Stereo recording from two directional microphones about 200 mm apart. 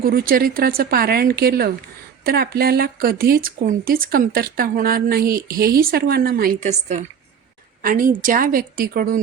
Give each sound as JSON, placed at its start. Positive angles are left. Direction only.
{"t": 0.0, "sound": "speech", "side_deg": -50}